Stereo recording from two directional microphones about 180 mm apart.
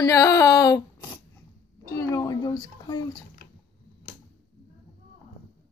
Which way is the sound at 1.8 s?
20° left (ahead or behind).